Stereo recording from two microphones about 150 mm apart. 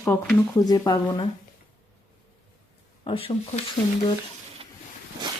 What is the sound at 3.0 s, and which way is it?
Speech, 40° left (ahead or behind).